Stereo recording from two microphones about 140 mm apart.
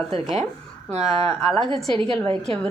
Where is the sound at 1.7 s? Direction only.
35° right (ahead or behind).